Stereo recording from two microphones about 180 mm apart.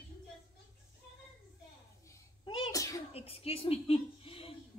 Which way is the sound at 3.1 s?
35° left (ahead or behind).